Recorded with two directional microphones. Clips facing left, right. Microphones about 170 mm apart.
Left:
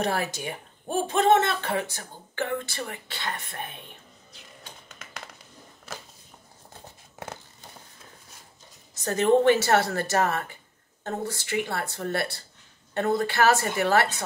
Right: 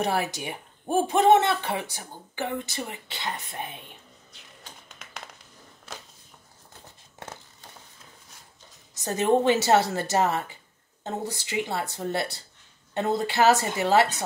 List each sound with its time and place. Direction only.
0.0 s speech: 15° right (ahead or behind)
4.3 s a sound: centre (ahead or behind)
9.0 s speech: 15° right (ahead or behind)